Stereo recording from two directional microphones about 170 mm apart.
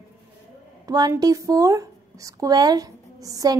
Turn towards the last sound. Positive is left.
turn(degrees=-20)  # may be behind; listen again after turning